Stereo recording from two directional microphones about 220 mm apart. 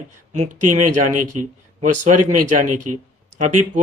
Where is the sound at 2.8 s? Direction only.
90° right.